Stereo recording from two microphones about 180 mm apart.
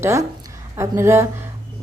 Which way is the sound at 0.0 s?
15° right (ahead or behind).